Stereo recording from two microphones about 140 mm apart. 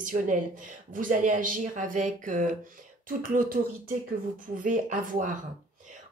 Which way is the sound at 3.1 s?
80° right.